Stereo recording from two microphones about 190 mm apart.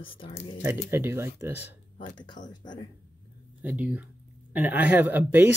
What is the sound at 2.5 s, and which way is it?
Speech, 20° left (ahead or behind).